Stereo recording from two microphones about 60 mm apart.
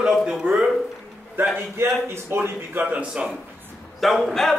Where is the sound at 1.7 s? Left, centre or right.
Right.